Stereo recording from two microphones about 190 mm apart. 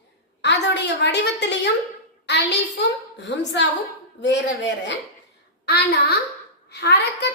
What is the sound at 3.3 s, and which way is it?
A man's voice, 65° left (ahead or behind).